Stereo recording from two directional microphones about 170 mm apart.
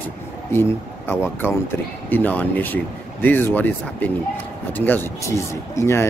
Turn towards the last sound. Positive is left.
turn(degrees=15)  # may be behind; listen again after turning